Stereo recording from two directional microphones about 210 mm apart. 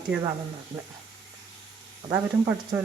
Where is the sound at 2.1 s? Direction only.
15° right (ahead or behind).